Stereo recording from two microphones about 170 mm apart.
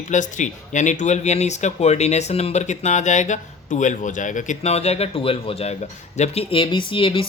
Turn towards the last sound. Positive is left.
turn(degrees=30)  # may be behind; listen again after turning